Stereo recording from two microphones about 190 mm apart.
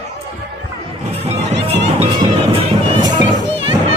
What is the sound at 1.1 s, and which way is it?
Music, 35° right (ahead or behind).